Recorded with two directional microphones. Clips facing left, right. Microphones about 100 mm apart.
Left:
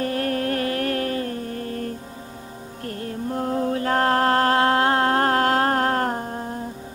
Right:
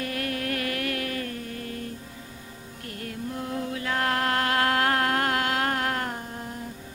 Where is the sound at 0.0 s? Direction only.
35° left (ahead or behind).